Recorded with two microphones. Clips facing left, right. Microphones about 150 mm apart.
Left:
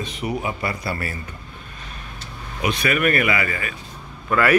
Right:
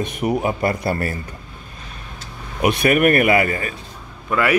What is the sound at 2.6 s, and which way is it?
Speech, 55° right (ahead or behind).